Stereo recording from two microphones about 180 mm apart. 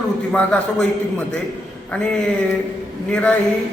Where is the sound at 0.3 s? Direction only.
5° left (ahead or behind).